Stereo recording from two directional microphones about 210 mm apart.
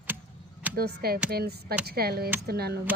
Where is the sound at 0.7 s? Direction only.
50° right (ahead or behind).